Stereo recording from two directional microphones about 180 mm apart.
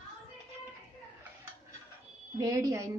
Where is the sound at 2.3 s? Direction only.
20° right (ahead or behind).